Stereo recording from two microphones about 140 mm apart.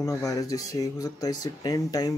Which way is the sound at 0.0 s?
25° left (ahead or behind).